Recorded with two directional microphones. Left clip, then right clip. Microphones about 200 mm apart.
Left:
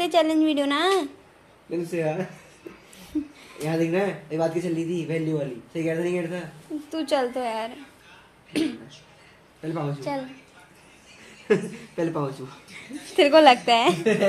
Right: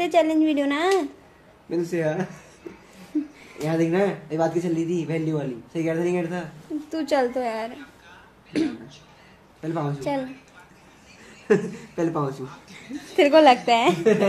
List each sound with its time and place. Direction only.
0.0 s a man's voice: 5° right (ahead or behind)
3.6 s a man's voice: 10° right (ahead or behind)
9.9 s a woman's voice: 30° right (ahead or behind)
11.4 s a woman's voice: centre (ahead or behind)